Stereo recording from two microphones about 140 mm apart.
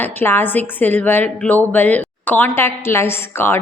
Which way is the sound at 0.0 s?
15° left (ahead or behind).